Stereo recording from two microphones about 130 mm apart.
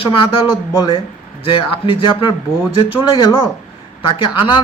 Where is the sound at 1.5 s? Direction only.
40° left (ahead or behind).